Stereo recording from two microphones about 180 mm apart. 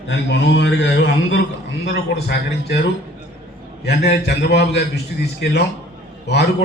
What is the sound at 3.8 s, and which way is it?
A man's voice, 65° left (ahead or behind).